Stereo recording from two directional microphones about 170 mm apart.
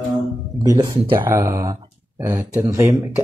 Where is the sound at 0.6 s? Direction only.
25° right (ahead or behind).